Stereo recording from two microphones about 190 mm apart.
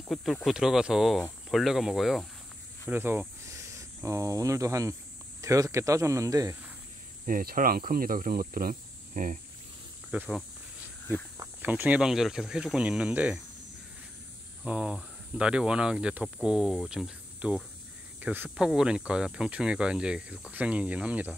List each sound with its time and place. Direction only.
0.1 s speech: centre (ahead or behind)
2.9 s speech: 10° right (ahead or behind)
7.2 s speech: 45° right (ahead or behind)
10.1 s speech: 10° right (ahead or behind)
11.3 s speech: 10° right (ahead or behind)
14.6 s speech: 5° right (ahead or behind)